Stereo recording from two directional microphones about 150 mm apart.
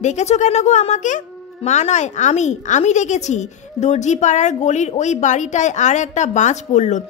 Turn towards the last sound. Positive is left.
turn(degrees=50)  # may be behind; listen again after turning